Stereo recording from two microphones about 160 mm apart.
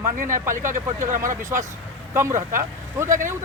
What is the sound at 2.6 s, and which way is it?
Speech, 20° right (ahead or behind).